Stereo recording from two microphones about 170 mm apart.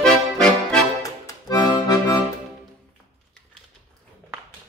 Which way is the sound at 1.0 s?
20° left (ahead or behind).